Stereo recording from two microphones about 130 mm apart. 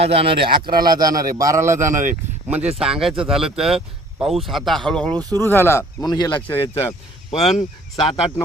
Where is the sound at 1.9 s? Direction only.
90° right.